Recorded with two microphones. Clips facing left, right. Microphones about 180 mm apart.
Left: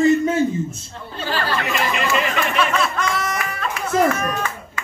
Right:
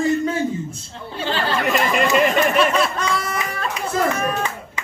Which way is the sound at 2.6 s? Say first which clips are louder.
Right 2 dB; 30° right (ahead or behind).